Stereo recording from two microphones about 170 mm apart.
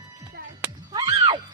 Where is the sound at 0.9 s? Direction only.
25° right (ahead or behind).